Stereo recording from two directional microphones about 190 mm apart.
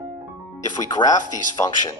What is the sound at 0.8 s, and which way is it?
Speech, 20° left (ahead or behind).